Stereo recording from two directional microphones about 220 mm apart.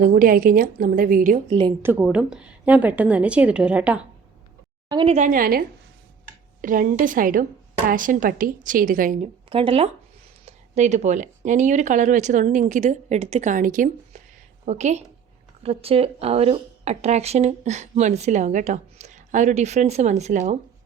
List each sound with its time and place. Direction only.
0.0 s a woman's voice: 40° right (ahead or behind)
1.8 s a woman's voice: 10° right (ahead or behind)
4.9 s a woman's voice: 25° right (ahead or behind)
9.5 s a woman's voice: 25° right (ahead or behind)